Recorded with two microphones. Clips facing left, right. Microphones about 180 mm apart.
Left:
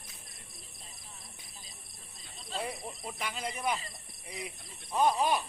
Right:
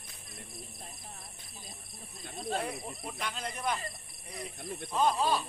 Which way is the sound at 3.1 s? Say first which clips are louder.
Left 1 dB; 10° left (ahead or behind).